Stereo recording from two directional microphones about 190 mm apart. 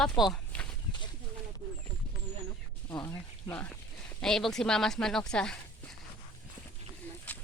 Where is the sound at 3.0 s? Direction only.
15° left (ahead or behind).